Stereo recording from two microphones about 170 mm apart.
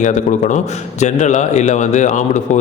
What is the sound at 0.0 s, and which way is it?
A man's voice, 45° left (ahead or behind).